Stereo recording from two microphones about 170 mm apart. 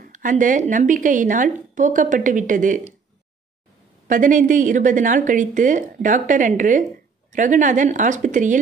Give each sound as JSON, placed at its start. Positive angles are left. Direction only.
{"t": 0.0, "sound": "a woman's voice", "side_deg": -50}
{"t": 4.1, "sound": "a woman's voice", "side_deg": -50}